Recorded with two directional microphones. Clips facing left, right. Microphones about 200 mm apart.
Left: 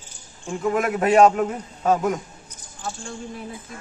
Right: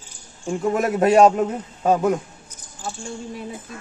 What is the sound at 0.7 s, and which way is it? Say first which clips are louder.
Speech: right 2 dB; 40° right (ahead or behind).